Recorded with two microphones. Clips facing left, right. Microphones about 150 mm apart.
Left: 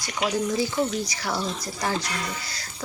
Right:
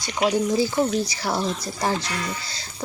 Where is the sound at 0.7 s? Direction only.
30° right (ahead or behind).